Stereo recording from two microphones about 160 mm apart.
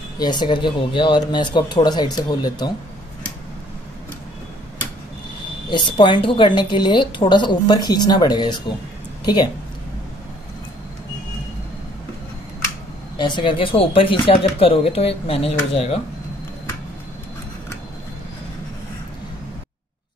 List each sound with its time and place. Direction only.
0.2 s a woman's voice: 25° left (ahead or behind)
5.7 s a woman's voice: 30° left (ahead or behind)
13.2 s speech: 30° left (ahead or behind)